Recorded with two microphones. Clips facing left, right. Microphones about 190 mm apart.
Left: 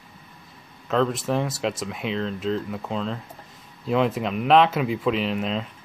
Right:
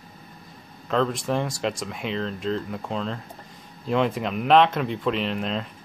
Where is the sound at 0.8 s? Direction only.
Centre (ahead or behind).